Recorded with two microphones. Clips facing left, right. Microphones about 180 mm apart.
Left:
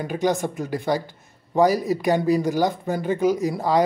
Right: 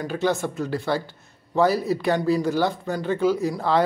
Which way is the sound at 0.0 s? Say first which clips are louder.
Left 1 dB; 15° left (ahead or behind).